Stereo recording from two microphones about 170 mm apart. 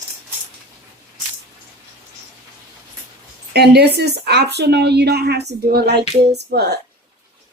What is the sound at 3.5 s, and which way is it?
Speech, 75° right (ahead or behind).